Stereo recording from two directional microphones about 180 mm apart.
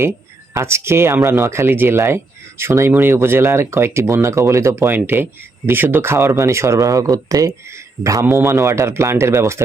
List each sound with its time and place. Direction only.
0.5 s speech: 15° right (ahead or behind)